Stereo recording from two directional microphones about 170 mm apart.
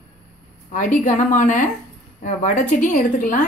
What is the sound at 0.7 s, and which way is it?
A woman's voice, 50° left (ahead or behind).